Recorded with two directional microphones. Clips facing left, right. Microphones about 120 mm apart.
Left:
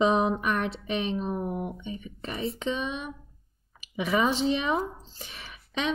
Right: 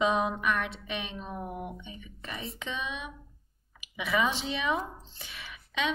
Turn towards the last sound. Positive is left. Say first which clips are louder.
# left 1 dB
turn(degrees=40)  # may be behind; listen again after turning